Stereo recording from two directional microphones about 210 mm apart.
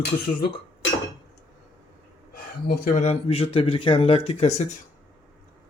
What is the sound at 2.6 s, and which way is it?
Speech, 45° left (ahead or behind).